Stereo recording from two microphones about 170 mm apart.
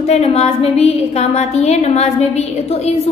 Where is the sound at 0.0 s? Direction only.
40° left (ahead or behind).